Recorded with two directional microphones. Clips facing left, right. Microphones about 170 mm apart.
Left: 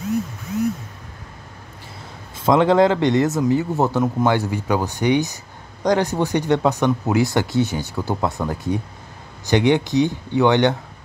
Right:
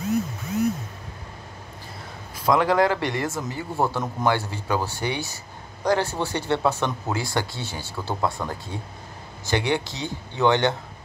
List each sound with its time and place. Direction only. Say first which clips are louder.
2.3 s a man's voice: left 5 dB; 25° left (ahead or behind)